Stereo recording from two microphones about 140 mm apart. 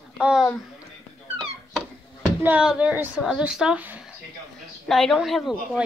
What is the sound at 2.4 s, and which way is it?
Speech, 10° right (ahead or behind).